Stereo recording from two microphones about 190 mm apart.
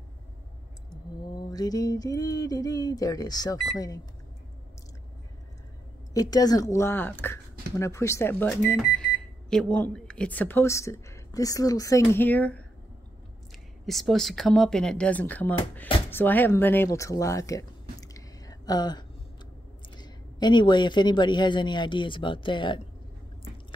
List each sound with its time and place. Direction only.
1.5 s speech: 20° left (ahead or behind)
6.1 s speech: 20° left (ahead or behind)
13.8 s speech: centre (ahead or behind); by 22.8 s 25° left (ahead or behind)